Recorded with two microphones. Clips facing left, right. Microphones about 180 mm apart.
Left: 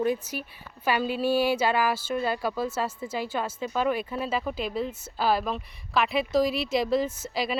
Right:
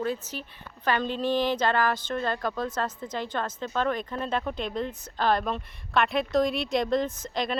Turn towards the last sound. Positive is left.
turn(degrees=5)  # may be behind; listen again after turning